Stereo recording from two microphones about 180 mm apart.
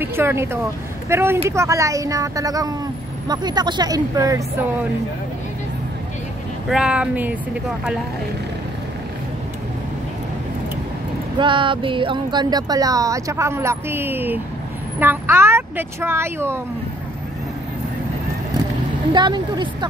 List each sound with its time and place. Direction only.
0.0 s speech: 15° right (ahead or behind)
6.7 s speech: 5° right (ahead or behind)
11.3 s speech: 25° right (ahead or behind)
19.1 s speech: 25° right (ahead or behind)